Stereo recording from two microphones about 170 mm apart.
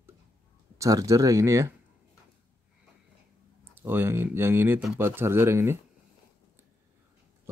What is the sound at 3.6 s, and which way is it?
Speech, 15° right (ahead or behind).